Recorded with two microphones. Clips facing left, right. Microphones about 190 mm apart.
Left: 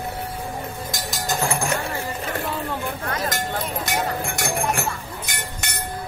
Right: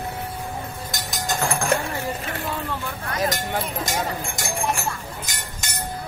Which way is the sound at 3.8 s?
65° left (ahead or behind).